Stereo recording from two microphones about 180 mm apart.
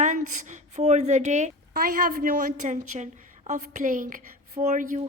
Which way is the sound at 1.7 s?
55° right (ahead or behind).